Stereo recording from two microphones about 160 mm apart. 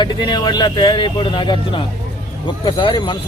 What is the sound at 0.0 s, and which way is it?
Speech, 30° left (ahead or behind).